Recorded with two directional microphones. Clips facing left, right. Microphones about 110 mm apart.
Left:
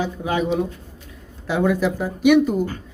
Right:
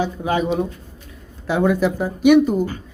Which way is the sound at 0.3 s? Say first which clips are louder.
Even; 40° right (ahead or behind).